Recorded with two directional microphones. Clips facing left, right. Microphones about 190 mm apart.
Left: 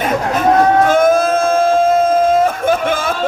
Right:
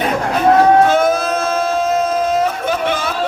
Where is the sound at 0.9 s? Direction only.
50° left (ahead or behind).